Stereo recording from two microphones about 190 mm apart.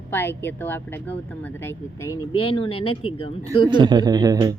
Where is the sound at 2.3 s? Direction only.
25° left (ahead or behind).